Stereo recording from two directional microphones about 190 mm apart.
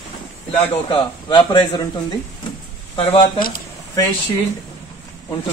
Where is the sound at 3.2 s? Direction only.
50° left (ahead or behind).